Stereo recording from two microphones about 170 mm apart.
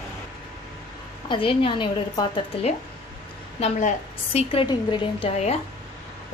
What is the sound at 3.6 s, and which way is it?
A woman's voice, 40° left (ahead or behind).